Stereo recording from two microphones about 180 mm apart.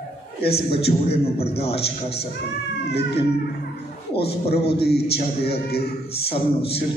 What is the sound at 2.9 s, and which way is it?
Speech, 65° left (ahead or behind).